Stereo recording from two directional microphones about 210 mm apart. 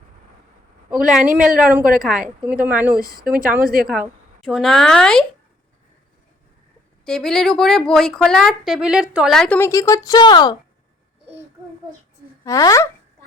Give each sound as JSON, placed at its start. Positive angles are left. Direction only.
{"t": 0.9, "sound": "a woman's voice", "side_deg": -5}
{"t": 3.0, "sound": "speech", "side_deg": -45}
{"t": 3.2, "sound": "a woman's voice", "side_deg": -5}
{"t": 7.0, "sound": "a woman's voice", "side_deg": 0}
{"t": 12.5, "sound": "speech", "side_deg": 15}